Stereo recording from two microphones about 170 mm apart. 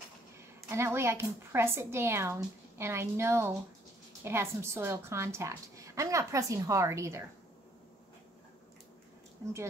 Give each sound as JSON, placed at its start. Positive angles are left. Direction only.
{"t": 0.7, "sound": "a woman's voice", "side_deg": -15}